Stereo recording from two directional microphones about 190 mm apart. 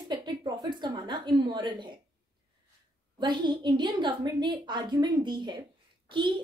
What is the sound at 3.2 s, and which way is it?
A woman's voice, 25° right (ahead or behind).